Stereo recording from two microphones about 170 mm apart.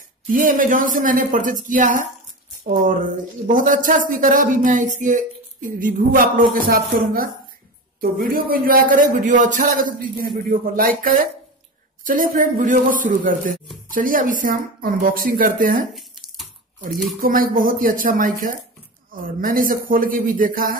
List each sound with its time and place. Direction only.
0.3 s a man's voice: 50° right (ahead or behind)
15.9 s a sound: centre (ahead or behind)
17.2 s a man's voice: 55° right (ahead or behind)